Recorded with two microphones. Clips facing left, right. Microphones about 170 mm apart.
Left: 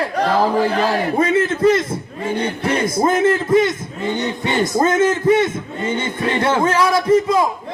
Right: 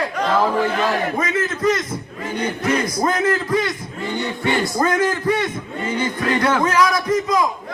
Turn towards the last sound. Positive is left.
turn(degrees=30)  # may be behind; listen again after turning